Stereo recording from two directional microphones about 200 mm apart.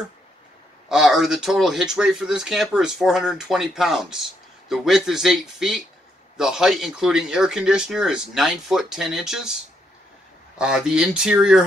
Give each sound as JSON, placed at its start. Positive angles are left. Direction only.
{"t": 0.8, "sound": "speech", "side_deg": -5}
{"t": 10.6, "sound": "speech", "side_deg": -5}